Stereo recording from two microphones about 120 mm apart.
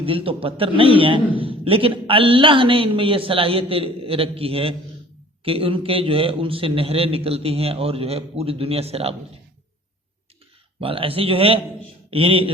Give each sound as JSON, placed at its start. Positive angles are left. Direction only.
{"t": 0.0, "sound": "a man's voice", "side_deg": -50}
{"t": 10.8, "sound": "a man's voice", "side_deg": -50}